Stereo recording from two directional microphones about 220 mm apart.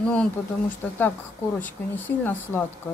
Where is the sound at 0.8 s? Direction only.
10° left (ahead or behind).